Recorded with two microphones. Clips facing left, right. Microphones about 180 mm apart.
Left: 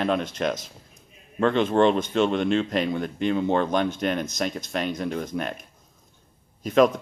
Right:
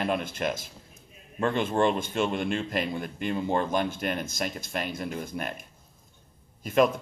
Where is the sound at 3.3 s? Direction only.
70° left (ahead or behind).